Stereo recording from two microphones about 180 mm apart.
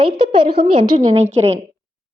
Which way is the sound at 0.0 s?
30° right (ahead or behind).